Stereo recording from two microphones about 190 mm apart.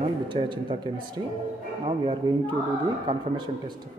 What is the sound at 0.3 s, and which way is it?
A man's voice, 25° right (ahead or behind).